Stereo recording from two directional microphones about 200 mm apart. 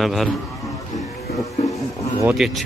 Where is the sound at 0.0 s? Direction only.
Centre (ahead or behind).